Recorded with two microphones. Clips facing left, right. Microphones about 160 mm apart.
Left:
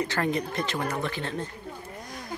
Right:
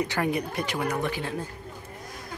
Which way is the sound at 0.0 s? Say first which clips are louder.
Even; 15° right (ahead or behind).